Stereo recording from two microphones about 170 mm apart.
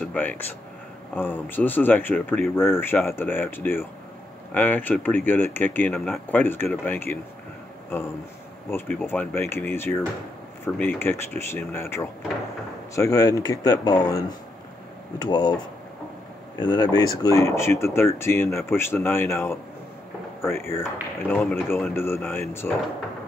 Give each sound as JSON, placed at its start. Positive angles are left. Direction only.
{"t": 0.0, "sound": "speech", "side_deg": 10}
{"t": 8.6, "sound": "speech", "side_deg": 10}